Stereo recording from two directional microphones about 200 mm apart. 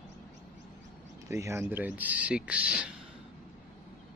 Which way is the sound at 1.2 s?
15° right (ahead or behind).